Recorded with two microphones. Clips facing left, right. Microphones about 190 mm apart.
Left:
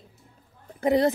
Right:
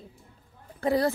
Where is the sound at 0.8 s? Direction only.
20° left (ahead or behind).